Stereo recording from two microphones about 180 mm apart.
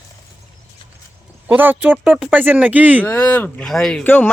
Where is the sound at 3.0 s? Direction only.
10° left (ahead or behind).